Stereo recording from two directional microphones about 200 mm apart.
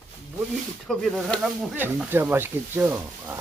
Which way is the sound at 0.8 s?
Centre (ahead or behind).